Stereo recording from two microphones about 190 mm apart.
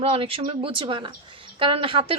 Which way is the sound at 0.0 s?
30° right (ahead or behind).